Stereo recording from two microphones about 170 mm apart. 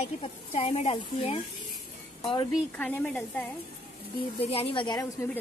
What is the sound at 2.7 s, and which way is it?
Speech, 10° left (ahead or behind).